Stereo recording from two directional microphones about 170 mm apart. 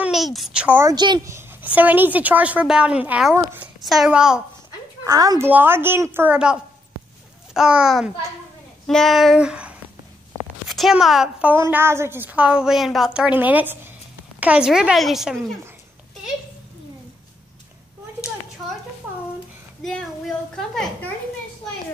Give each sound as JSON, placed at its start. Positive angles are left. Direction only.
{"t": 0.0, "sound": "a woman's voice", "side_deg": 0}
{"t": 0.9, "sound": "a woman's voice", "side_deg": -25}
{"t": 5.0, "sound": "a woman's voice", "side_deg": -20}
{"t": 11.5, "sound": "a woman's voice", "side_deg": -15}
{"t": 19.8, "sound": "child singing", "side_deg": 5}
{"t": 20.5, "sound": "a woman's voice", "side_deg": 0}